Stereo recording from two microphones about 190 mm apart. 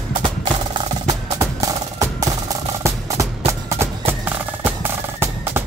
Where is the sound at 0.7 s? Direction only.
20° right (ahead or behind).